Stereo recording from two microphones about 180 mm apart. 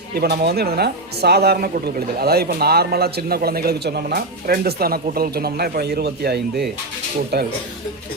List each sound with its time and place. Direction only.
0.1 s speech: 60° right (ahead or behind)